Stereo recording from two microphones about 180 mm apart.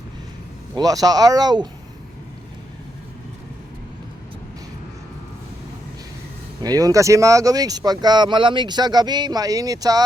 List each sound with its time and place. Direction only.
0.8 s speech: 20° right (ahead or behind)
6.6 s speech: 20° right (ahead or behind)